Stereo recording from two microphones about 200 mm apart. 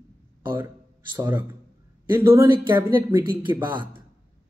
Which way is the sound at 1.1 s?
10° right (ahead or behind).